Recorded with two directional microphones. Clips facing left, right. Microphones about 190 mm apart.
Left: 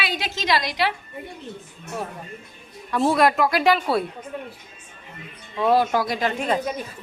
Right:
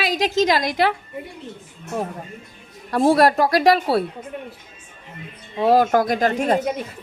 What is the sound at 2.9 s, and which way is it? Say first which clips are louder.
A woman's voice: right 3 dB; 40° right (ahead or behind).